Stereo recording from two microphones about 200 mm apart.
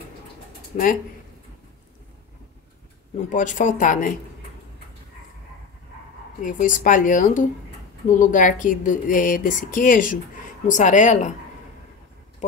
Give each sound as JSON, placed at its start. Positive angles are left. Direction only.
{"t": 0.7, "sound": "speech", "side_deg": 40}
{"t": 3.3, "sound": "speech", "side_deg": 40}
{"t": 6.4, "sound": "speech", "side_deg": 40}